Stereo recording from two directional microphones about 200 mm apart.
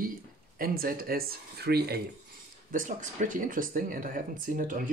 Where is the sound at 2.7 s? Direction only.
40° right (ahead or behind).